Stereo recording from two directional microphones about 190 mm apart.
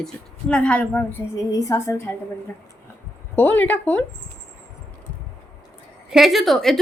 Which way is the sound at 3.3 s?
10° left (ahead or behind).